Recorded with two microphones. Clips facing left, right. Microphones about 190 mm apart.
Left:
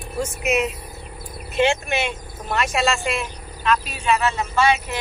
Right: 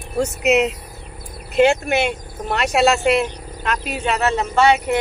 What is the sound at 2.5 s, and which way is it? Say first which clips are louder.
Speech: right 5 dB; 70° right (ahead or behind).